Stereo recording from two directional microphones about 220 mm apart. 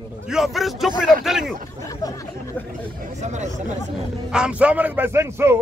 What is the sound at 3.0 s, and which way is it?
Speech, 30° right (ahead or behind).